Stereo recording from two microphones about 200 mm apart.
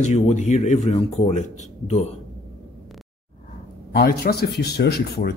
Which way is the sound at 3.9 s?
50° left (ahead or behind).